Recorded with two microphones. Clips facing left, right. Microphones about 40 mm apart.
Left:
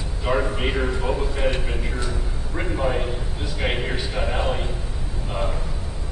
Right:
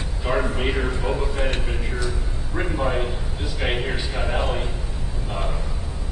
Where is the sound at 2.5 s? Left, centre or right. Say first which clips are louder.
Even; centre.